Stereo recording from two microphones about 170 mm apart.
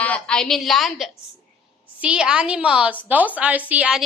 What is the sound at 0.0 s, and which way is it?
A woman's voice, 5° left (ahead or behind).